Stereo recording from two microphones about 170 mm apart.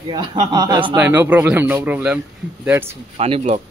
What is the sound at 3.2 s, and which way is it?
Speech, 35° right (ahead or behind).